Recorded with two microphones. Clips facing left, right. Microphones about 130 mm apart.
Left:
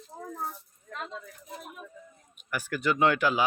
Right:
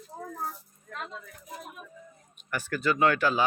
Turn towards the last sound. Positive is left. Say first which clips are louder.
# even
turn(degrees=15)  # may be behind; listen again after turning